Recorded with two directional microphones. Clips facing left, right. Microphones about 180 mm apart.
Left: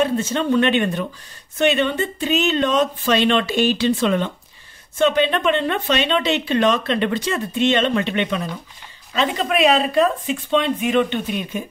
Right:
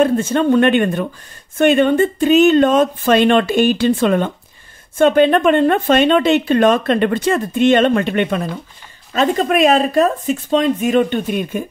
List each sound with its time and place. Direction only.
0.0 s speech: 50° right (ahead or behind)